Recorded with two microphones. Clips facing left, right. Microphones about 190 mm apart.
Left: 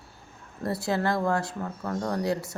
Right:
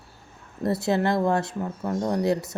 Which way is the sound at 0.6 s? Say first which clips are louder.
Right 4 dB; 20° right (ahead or behind).